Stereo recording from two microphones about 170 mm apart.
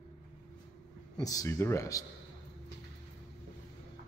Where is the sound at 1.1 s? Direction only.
20° left (ahead or behind).